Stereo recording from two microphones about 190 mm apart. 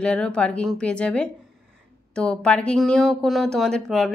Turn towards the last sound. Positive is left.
turn(degrees=0)  # may be behind; listen again after turning